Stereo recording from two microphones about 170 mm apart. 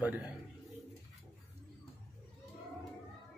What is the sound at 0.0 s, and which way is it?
Speech, 10° right (ahead or behind).